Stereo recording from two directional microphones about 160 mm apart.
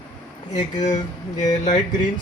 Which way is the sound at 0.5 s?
50° left (ahead or behind).